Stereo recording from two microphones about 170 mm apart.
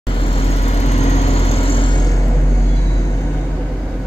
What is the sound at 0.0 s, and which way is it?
Vehicle, 30° left (ahead or behind).